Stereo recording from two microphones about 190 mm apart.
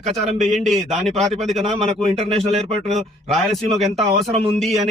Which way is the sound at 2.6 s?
35° right (ahead or behind).